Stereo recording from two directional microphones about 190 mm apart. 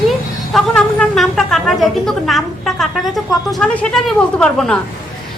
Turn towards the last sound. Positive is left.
turn(degrees=5)  # may be behind; listen again after turning